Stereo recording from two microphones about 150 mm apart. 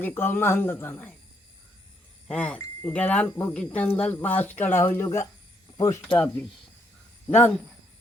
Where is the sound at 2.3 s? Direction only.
10° left (ahead or behind).